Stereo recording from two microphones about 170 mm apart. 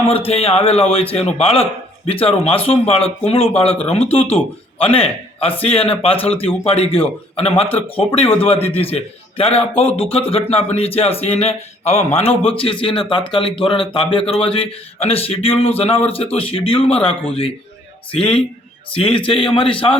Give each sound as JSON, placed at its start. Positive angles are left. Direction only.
{"t": 0.1, "sound": "speech", "side_deg": 35}